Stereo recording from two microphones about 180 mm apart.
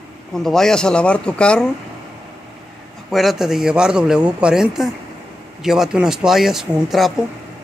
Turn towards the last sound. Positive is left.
turn(degrees=-5)  # may be behind; listen again after turning